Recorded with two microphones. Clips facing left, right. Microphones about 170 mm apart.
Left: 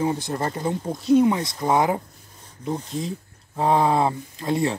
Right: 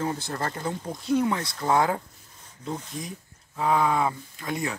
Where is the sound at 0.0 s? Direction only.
20° left (ahead or behind).